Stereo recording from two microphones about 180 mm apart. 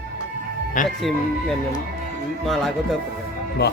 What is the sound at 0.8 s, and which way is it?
Speech, 45° left (ahead or behind).